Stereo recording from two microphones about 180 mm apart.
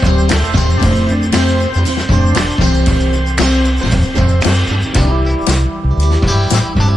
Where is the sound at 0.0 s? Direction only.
Centre (ahead or behind).